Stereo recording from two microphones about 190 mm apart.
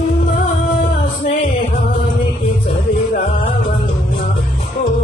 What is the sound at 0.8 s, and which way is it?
Music, 40° left (ahead or behind).